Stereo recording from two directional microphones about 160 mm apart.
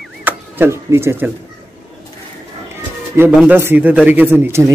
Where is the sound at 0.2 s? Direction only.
10° right (ahead or behind).